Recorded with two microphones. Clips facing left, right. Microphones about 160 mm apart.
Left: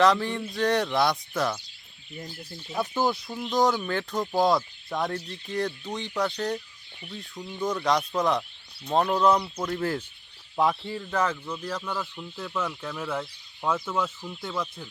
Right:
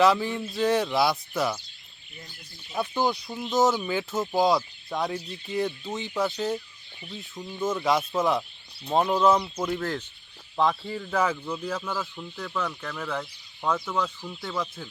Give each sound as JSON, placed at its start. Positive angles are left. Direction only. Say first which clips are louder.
{"t": 0.0, "sound": "speech", "louder": "even", "side_deg": -5}
{"t": 2.1, "sound": "speech", "louder": "left 8 dB", "side_deg": 40}
{"t": 2.7, "sound": "speech", "louder": "even", "side_deg": 0}
{"t": 10.6, "sound": "speech", "louder": "even", "side_deg": 5}